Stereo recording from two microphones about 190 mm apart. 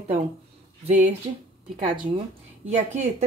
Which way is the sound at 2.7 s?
35° right (ahead or behind).